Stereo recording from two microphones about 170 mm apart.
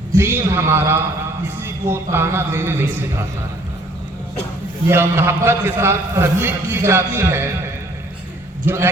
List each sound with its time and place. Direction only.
0.1 s a man's voice: 15° right (ahead or behind)
4.9 s a man's voice: 15° right (ahead or behind)
8.6 s a man's voice: 15° right (ahead or behind)